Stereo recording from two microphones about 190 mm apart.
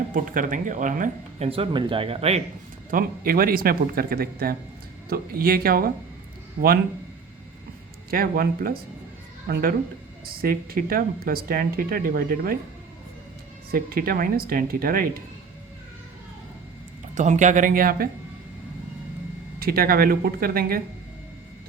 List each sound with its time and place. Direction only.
0.1 s speech: 45° right (ahead or behind)
1.5 s speech: 30° right (ahead or behind)
2.9 s speech: 50° right (ahead or behind)
8.1 s speech: 50° right (ahead or behind)
13.7 s speech: 50° right (ahead or behind)
17.2 s speech: 40° right (ahead or behind)
19.5 s speech: 50° right (ahead or behind)